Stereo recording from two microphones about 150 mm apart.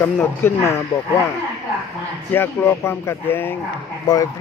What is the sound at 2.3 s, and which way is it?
A man's voice, 15° left (ahead or behind).